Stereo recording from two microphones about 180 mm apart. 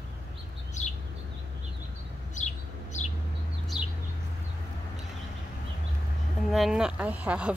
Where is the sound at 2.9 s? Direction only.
40° left (ahead or behind).